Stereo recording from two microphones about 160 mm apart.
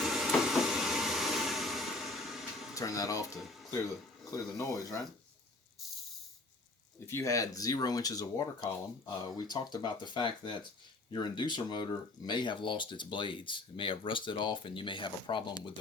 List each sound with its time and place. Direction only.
0.0 s train: centre (ahead or behind)
2.7 s speech: 20° left (ahead or behind)
3.3 s speech: centre (ahead or behind)
4.3 s speech: 20° left (ahead or behind)
7.1 s speech: 20° left (ahead or behind)